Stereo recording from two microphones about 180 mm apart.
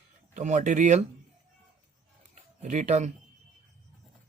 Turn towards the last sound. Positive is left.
turn(degrees=-40)  # may be behind; listen again after turning